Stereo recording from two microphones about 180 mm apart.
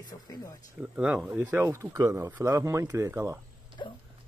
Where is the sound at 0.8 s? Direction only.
5° right (ahead or behind).